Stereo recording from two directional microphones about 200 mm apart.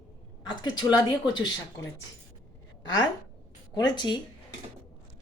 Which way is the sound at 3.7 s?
20° left (ahead or behind).